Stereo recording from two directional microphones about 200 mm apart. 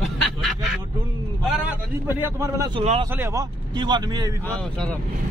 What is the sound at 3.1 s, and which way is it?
A man's voice, 15° right (ahead or behind).